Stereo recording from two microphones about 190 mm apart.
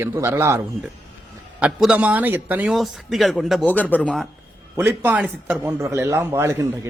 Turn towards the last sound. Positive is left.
turn(degrees=-15)  # may be behind; listen again after turning